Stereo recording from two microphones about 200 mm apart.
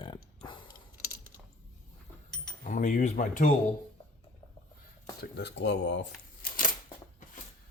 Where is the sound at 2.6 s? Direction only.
40° left (ahead or behind).